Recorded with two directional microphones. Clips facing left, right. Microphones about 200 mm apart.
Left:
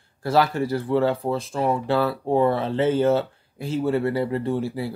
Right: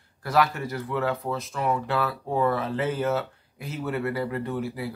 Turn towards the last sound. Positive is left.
turn(degrees=30)  # may be behind; listen again after turning